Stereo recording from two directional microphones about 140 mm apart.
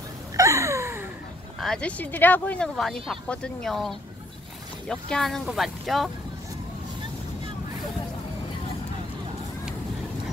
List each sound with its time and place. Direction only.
0.4 s a sound: 20° right (ahead or behind)
1.6 s speech: 5° left (ahead or behind)
5.1 s speech: centre (ahead or behind)